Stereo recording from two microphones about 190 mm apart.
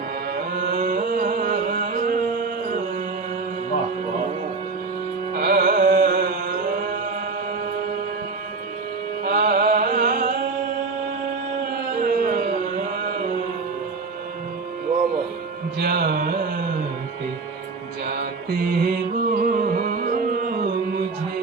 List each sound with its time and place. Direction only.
0.5 s music: 45° right (ahead or behind)
5.3 s music: 50° right (ahead or behind)
9.2 s music: 50° right (ahead or behind)
11.6 s a sound: 50° right (ahead or behind)
15.8 s carnatic music: 50° right (ahead or behind)
18.0 s music: 50° right (ahead or behind)